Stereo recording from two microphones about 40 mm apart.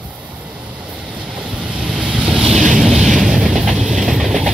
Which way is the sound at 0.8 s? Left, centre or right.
Right.